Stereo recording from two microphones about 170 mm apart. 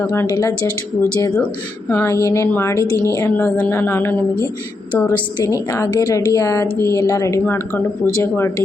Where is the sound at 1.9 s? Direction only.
15° left (ahead or behind).